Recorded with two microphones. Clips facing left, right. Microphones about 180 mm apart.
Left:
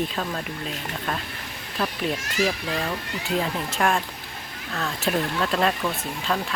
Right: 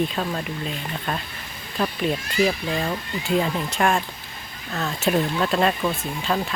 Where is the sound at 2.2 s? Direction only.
80° left.